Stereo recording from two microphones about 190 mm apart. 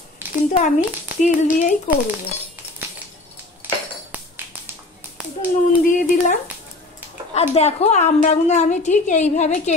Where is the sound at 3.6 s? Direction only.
10° right (ahead or behind).